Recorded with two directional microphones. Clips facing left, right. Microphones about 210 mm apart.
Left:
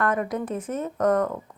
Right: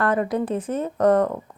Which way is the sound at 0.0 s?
30° right (ahead or behind).